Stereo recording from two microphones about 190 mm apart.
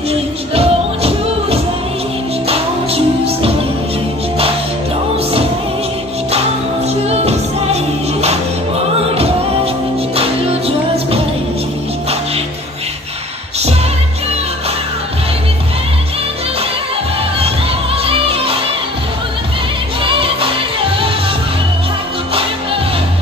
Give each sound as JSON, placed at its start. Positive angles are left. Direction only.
{"t": 0.6, "sound": "music", "side_deg": -30}
{"t": 7.1, "sound": "music", "side_deg": -35}
{"t": 18.0, "sound": "music", "side_deg": -30}